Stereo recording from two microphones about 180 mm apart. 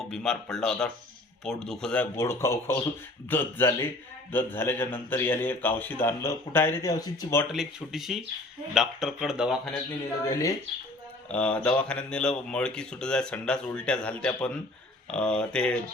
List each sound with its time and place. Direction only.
0.1 s speech: 5° left (ahead or behind)
7.4 s speech: centre (ahead or behind)
10.2 s speech: 15° left (ahead or behind)
11.3 s speech: 5° left (ahead or behind)